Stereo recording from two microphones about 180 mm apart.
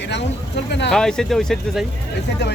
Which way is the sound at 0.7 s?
70° left (ahead or behind).